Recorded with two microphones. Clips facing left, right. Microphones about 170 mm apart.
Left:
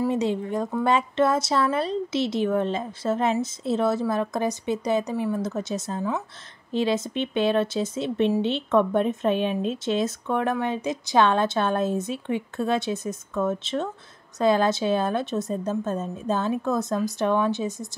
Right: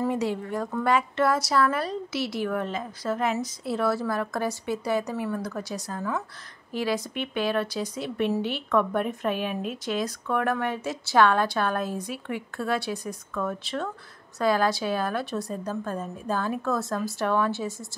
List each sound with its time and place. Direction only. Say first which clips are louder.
0.1 s speech: left 3 dB; 20° left (ahead or behind)